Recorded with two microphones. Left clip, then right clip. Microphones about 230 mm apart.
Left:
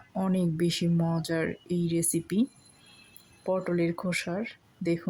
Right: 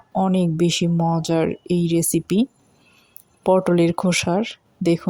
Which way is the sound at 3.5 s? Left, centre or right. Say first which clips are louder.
Right 11 dB; right.